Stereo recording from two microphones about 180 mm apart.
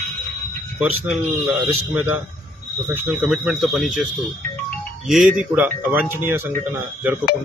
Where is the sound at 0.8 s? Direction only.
Centre (ahead or behind).